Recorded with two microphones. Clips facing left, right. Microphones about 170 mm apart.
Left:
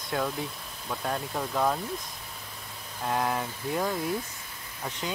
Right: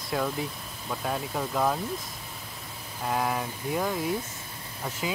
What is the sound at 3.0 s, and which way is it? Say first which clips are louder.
A child's voice: even; centre (ahead or behind).